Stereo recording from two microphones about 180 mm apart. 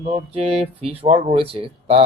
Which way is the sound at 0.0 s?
35° right (ahead or behind).